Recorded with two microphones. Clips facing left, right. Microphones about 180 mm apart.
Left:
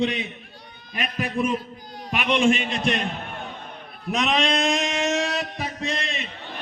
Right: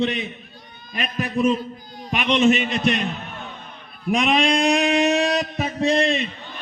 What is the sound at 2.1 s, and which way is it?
Speech, centre (ahead or behind).